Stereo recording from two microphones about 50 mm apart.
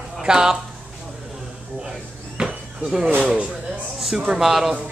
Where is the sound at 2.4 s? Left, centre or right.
Centre.